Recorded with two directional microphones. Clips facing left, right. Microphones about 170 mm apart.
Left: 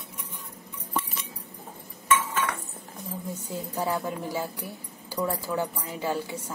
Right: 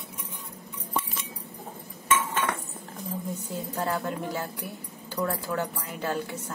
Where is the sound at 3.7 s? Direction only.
10° left (ahead or behind).